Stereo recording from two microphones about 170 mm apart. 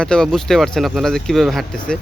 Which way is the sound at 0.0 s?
5° left (ahead or behind).